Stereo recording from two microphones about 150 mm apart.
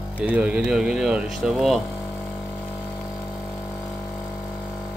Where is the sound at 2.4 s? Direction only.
15° left (ahead or behind).